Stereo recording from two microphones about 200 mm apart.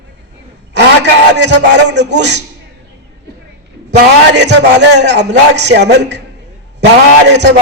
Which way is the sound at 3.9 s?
60° right (ahead or behind).